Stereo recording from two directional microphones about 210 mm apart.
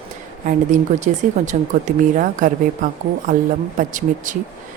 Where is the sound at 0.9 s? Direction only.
35° right (ahead or behind).